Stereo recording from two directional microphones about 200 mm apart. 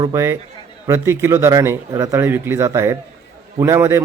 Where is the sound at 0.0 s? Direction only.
15° right (ahead or behind).